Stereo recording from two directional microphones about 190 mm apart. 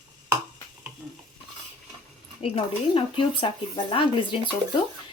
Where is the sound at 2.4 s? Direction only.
30° left (ahead or behind).